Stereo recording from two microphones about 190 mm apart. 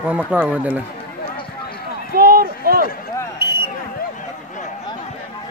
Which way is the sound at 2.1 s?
50° right (ahead or behind).